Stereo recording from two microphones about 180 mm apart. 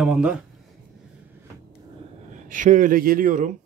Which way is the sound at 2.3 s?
45° right (ahead or behind).